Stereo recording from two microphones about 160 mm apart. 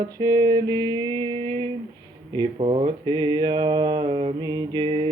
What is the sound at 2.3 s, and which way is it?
Mantra, 35° right (ahead or behind).